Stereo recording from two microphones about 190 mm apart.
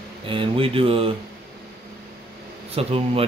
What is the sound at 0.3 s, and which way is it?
Speech, 30° right (ahead or behind).